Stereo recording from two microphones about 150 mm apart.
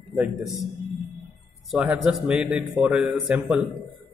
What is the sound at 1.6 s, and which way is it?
A man's voice, 5° right (ahead or behind).